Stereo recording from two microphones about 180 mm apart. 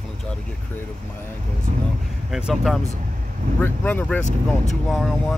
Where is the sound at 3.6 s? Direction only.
10° left (ahead or behind).